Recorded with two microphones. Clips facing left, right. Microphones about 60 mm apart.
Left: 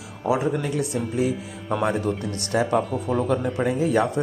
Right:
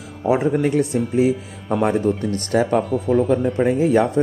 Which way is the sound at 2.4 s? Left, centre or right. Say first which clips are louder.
Right 1 dB; right.